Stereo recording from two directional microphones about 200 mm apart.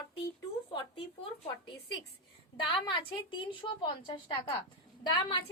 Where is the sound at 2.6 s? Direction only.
25° left (ahead or behind).